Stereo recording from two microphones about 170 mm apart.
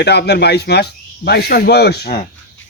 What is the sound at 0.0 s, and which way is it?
Speech, 80° left.